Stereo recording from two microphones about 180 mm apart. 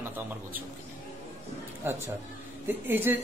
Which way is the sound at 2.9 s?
10° right (ahead or behind).